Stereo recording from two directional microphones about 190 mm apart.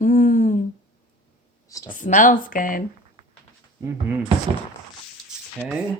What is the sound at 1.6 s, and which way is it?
Speech, 15° left (ahead or behind).